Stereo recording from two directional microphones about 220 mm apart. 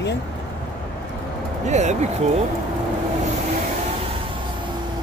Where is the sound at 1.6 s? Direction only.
30° right (ahead or behind).